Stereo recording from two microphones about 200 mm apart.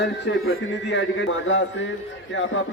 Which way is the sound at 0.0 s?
60° left (ahead or behind).